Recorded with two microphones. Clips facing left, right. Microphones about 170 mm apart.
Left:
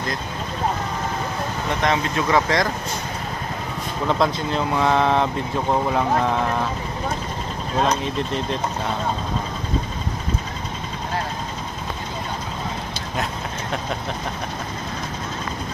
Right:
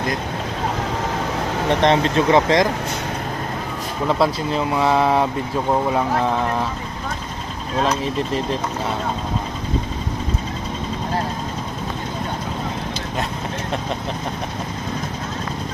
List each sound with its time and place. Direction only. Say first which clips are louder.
1.8 s speech: right 5 dB; 30° right (ahead or behind)
4.2 s speech: right 2 dB; 5° right (ahead or behind)